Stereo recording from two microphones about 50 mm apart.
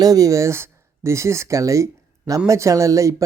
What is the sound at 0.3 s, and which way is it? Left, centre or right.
Speech, right.